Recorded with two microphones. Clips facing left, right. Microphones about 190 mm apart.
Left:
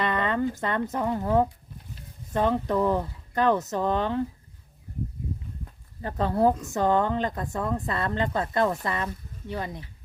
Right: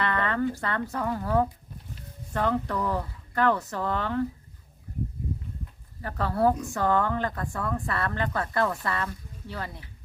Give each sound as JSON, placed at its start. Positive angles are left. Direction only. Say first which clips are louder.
{"t": 0.0, "sound": "speech", "louder": "left 1 dB", "side_deg": 20}
{"t": 6.0, "sound": "speech", "louder": "left 2 dB", "side_deg": 20}